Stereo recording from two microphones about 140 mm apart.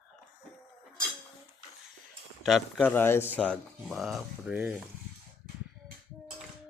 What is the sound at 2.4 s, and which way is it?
Speech, centre (ahead or behind).